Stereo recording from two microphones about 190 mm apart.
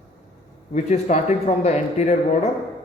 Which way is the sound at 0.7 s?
40° left (ahead or behind).